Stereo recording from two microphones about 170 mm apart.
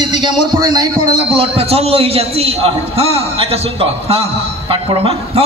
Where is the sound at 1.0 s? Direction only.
40° left (ahead or behind).